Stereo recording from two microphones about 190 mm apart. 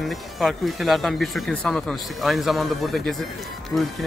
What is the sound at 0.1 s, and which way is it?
Speech, centre (ahead or behind).